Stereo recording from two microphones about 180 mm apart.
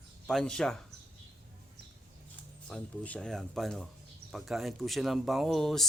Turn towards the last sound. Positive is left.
turn(degrees=0)  # may be behind; listen again after turning